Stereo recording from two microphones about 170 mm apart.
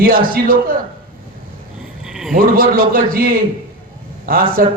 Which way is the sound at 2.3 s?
55° right (ahead or behind).